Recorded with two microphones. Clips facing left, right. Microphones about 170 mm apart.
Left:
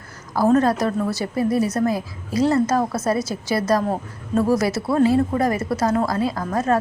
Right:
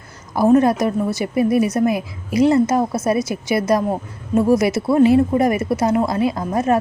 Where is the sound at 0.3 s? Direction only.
15° right (ahead or behind).